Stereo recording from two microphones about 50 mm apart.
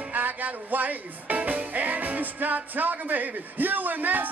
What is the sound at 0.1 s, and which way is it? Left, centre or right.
Music, right.